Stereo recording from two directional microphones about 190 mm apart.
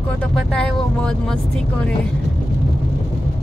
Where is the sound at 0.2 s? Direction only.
5° left (ahead or behind).